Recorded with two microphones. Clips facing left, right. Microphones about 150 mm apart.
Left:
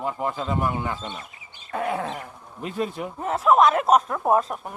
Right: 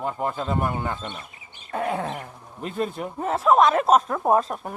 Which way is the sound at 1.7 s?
35° right (ahead or behind).